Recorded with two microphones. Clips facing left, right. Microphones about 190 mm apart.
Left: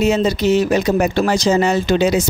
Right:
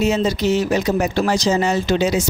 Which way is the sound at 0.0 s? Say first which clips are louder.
Left 2 dB; 60° left (ahead or behind).